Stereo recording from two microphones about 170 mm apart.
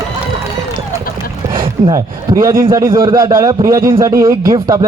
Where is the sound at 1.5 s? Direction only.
20° right (ahead or behind).